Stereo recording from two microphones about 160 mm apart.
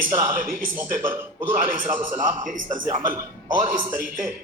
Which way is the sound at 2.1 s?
55° right (ahead or behind).